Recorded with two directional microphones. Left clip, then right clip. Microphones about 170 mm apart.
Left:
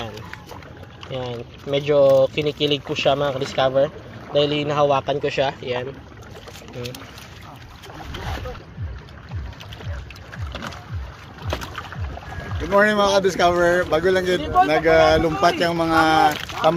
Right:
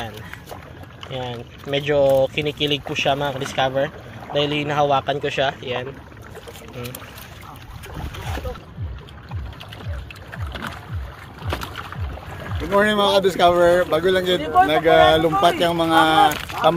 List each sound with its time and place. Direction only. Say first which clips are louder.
1.1 s speech: left 1 dB; 10° left (ahead or behind)
12.7 s speech: even; 5° left (ahead or behind)
14.4 s a man's voice: right 2 dB; 55° left (ahead or behind)
14.7 s speech: right 1 dB; centre (ahead or behind)